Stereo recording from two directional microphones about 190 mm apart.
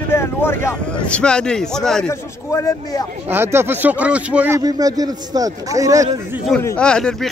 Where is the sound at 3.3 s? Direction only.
10° right (ahead or behind).